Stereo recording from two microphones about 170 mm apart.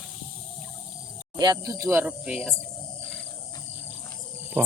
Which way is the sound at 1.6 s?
20° right (ahead or behind).